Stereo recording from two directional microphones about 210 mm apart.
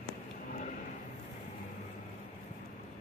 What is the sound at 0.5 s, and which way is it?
Vehicle, 40° left (ahead or behind).